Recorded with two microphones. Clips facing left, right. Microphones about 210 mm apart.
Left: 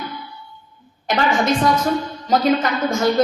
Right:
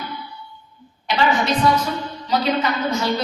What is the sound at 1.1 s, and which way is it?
A woman's voice, 50° left (ahead or behind).